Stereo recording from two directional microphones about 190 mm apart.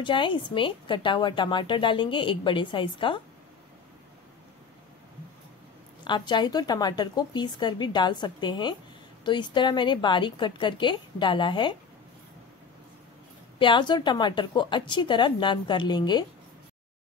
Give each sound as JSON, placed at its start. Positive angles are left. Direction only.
{"t": 0.0, "sound": "a woman's voice", "side_deg": 25}
{"t": 6.0, "sound": "a woman's voice", "side_deg": 25}
{"t": 13.6, "sound": "a woman's voice", "side_deg": 25}